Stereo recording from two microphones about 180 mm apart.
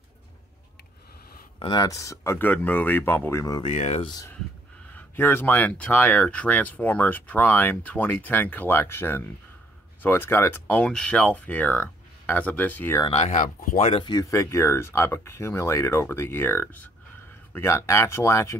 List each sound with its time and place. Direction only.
1.6 s speech: 25° left (ahead or behind)
3.6 s speech: 40° left (ahead or behind)
4.9 s speech: 10° left (ahead or behind)
13.0 s speech: 35° left (ahead or behind)
13.8 s speech: 30° left (ahead or behind)